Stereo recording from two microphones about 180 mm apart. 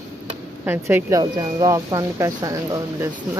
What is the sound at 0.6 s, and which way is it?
Speech, 10° right (ahead or behind).